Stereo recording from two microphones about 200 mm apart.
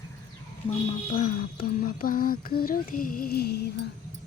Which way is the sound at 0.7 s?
35° left (ahead or behind).